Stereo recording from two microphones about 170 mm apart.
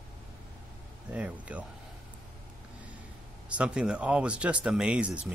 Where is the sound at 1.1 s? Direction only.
5° right (ahead or behind).